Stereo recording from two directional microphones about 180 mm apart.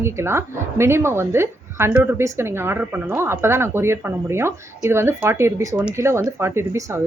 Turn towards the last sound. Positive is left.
turn(degrees=-15)  # may be behind; listen again after turning